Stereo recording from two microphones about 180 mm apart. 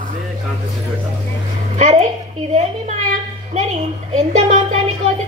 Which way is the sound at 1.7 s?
40° right (ahead or behind).